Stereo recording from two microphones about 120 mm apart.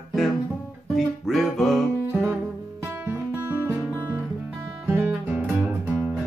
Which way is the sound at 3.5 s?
20° right (ahead or behind).